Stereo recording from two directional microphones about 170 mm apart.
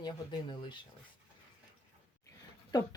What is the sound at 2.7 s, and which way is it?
Speech, 25° left (ahead or behind).